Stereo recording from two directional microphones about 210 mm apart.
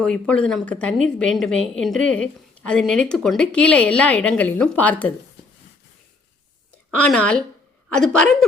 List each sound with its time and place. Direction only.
0.0 s a woman's voice: 5° left (ahead or behind)
6.9 s a woman's voice: 5° left (ahead or behind)